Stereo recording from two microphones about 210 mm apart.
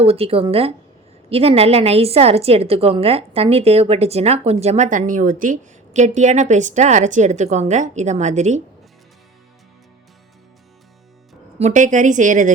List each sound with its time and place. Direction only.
0.0 s a woman's voice: 30° right (ahead or behind)
11.6 s a woman's voice: 35° right (ahead or behind)